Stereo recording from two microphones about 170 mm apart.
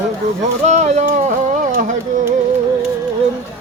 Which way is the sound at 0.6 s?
45° right (ahead or behind).